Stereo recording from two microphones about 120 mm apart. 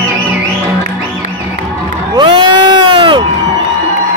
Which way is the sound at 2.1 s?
40° right (ahead or behind).